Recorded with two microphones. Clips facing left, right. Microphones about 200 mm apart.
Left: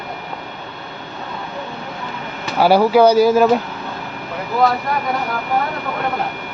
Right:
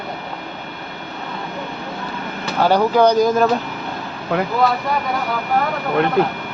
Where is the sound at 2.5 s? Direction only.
10° left (ahead or behind).